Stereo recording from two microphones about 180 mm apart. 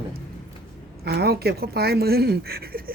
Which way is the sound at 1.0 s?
60° right (ahead or behind).